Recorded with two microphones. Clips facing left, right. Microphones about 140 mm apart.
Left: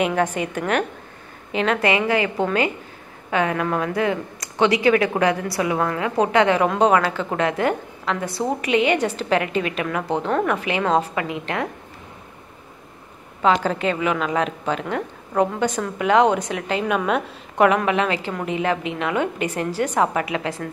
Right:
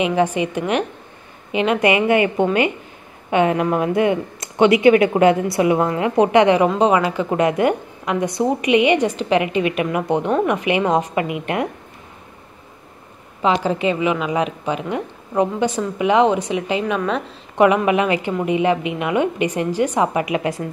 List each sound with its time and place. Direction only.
0.0 s a woman's voice: 10° right (ahead or behind)
1.9 s a woman's voice: 20° right (ahead or behind)
6.6 s a woman's voice: 5° right (ahead or behind)
13.4 s a woman's voice: 10° right (ahead or behind)
17.6 s a woman's voice: 5° right (ahead or behind)